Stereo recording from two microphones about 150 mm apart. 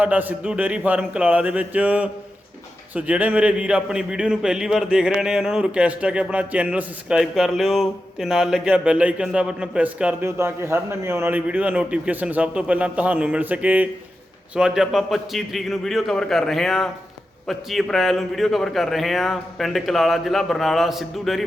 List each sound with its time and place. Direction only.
0.0 s a man's voice: 10° right (ahead or behind)